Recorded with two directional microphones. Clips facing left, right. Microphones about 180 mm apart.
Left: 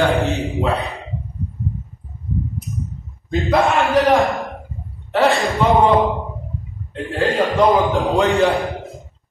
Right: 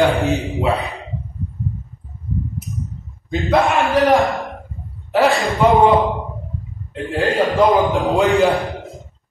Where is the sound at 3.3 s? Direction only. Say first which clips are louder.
Even; centre (ahead or behind).